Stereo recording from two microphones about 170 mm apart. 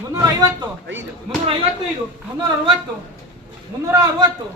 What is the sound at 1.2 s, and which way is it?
Speech, 35° right (ahead or behind).